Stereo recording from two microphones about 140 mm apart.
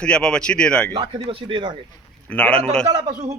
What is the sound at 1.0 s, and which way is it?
Speech, 45° right (ahead or behind).